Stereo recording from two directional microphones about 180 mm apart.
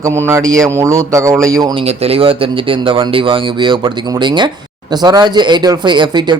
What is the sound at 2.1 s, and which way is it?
Speech, 30° right (ahead or behind).